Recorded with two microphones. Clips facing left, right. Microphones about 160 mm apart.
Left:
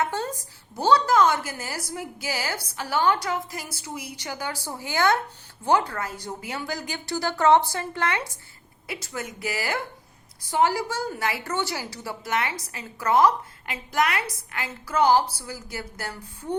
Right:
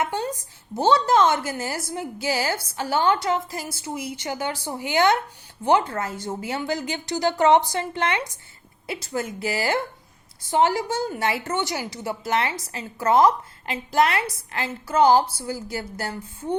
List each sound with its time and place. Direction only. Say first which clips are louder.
0.0 s a woman's voice: right 1 dB; 15° right (ahead or behind)